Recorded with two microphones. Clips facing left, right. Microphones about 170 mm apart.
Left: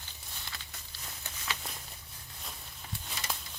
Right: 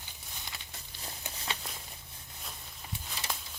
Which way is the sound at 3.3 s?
5° left (ahead or behind).